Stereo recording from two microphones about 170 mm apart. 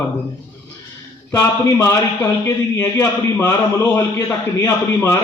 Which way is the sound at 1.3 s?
15° left (ahead or behind).